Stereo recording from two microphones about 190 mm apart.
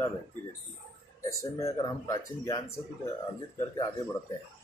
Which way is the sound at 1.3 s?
15° left (ahead or behind).